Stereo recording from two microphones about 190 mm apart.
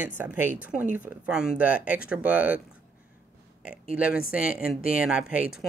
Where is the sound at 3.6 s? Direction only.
5° right (ahead or behind).